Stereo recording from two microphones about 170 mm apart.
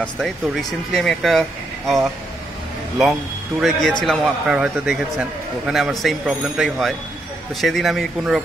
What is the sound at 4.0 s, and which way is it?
A man's voice, centre (ahead or behind).